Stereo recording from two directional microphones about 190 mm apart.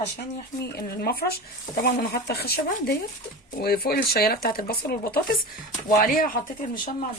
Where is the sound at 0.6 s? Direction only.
55° left (ahead or behind).